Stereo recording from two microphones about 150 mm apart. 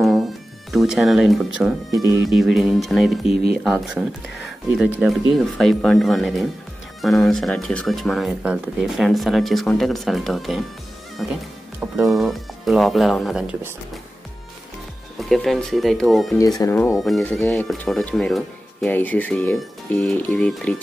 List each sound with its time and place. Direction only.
0.0 s music: centre (ahead or behind)
2.2 s speech: centre (ahead or behind)
15.1 s speech: centre (ahead or behind)
16.3 s speech: 25° left (ahead or behind); by 18.9 s centre (ahead or behind)
18.9 s speech: 10° left (ahead or behind)